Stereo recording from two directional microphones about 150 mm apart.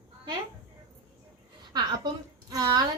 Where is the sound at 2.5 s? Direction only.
25° right (ahead or behind).